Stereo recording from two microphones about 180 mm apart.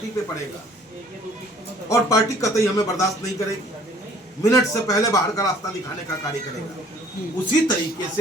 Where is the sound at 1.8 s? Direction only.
20° left (ahead or behind).